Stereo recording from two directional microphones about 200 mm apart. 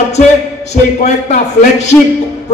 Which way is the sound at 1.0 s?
35° left (ahead or behind).